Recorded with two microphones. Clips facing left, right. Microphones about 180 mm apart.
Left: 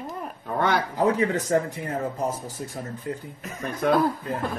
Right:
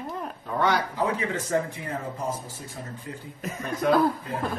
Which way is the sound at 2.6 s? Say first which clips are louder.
Left 5 dB; 50° left (ahead or behind).